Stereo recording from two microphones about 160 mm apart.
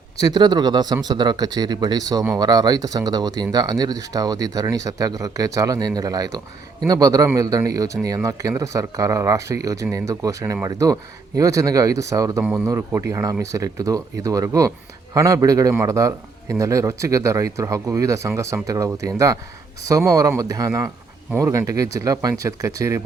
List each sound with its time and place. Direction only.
0.2 s speech: 25° right (ahead or behind)